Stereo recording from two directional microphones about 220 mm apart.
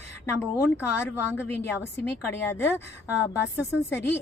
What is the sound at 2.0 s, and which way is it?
A woman's voice, 10° left (ahead or behind).